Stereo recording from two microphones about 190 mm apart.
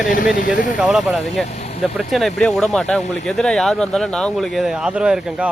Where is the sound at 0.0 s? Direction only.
45° left (ahead or behind).